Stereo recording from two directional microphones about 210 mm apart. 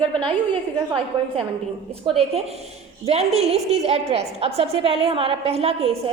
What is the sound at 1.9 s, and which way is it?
A woman's voice, 30° right (ahead or behind).